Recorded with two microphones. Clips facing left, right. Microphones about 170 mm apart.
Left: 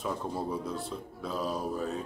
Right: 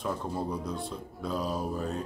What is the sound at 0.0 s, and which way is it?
A man's voice, 5° left (ahead or behind).